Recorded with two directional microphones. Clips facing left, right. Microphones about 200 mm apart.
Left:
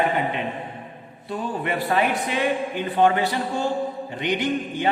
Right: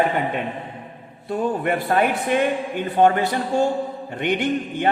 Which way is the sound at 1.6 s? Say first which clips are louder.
Even; 50° right (ahead or behind).